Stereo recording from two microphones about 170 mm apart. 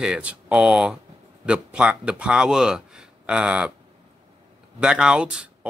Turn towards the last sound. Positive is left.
turn(degrees=-5)  # may be behind; listen again after turning